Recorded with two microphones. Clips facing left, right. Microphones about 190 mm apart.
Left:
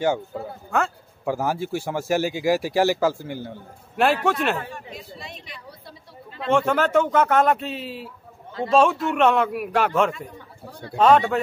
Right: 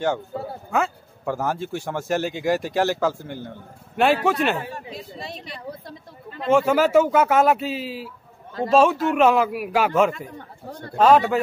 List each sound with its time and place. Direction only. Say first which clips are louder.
0.7 s speech: right 1 dB; 5° right (ahead or behind)
1.2 s speech: left 1 dB; 10° left (ahead or behind)
4.7 s a sound: right 3 dB; 35° right (ahead or behind)
6.4 s speech: right 3 dB; 5° right (ahead or behind)